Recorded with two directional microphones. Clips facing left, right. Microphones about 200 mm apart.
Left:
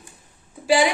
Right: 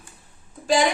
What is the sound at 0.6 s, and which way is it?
Speech, 10° left (ahead or behind).